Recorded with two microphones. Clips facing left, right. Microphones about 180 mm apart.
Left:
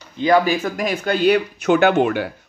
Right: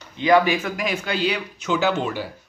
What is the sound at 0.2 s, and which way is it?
Speech, 35° left (ahead or behind).